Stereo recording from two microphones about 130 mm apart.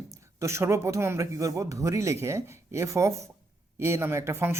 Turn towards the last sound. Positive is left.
turn(degrees=-20)  # may be behind; listen again after turning